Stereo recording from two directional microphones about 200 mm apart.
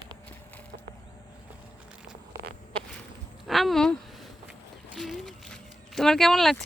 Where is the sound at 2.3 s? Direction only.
50° right (ahead or behind).